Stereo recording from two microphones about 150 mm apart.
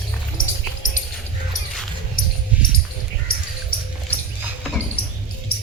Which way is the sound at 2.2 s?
70° left (ahead or behind).